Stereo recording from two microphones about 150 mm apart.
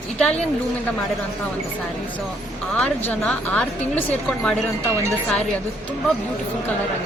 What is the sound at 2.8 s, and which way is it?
A woman's voice, 10° left (ahead or behind).